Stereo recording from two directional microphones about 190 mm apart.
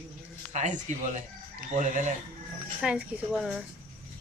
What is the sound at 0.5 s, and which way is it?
Speech, 40° right (ahead or behind).